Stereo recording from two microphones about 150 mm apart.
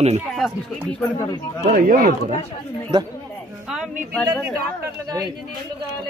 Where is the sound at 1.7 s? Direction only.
75° right (ahead or behind).